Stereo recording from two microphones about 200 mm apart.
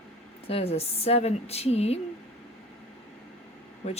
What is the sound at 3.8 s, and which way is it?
Speech, 30° left (ahead or behind).